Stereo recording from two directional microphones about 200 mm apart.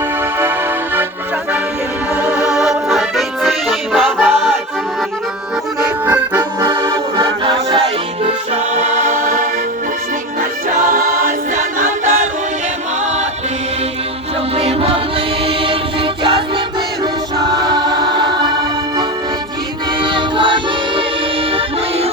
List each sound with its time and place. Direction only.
2.1 s music: 5° right (ahead or behind)
5.8 s accordion: 15° right (ahead or behind)
6.7 s music: 20° right (ahead or behind)
8.5 s choir: 35° right (ahead or behind)
10.7 s choir: 40° right (ahead or behind)
14.5 s music: 30° right (ahead or behind)
17.0 s choir: 20° right (ahead or behind)
20.0 s music: 25° right (ahead or behind)